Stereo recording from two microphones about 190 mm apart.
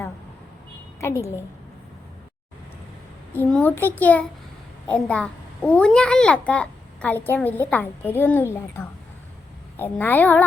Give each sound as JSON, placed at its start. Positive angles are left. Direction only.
{"t": 1.0, "sound": "a child's voice", "side_deg": 15}
{"t": 3.3, "sound": "a child's voice", "side_deg": 10}